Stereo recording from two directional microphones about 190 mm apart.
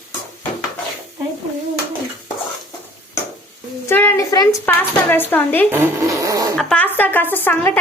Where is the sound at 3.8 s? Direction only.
10° left (ahead or behind).